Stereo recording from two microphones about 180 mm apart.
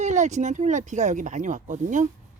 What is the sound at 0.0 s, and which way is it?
Speech, 40° right (ahead or behind).